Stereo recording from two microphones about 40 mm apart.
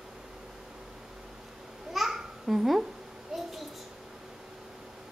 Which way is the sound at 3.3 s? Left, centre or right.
Centre.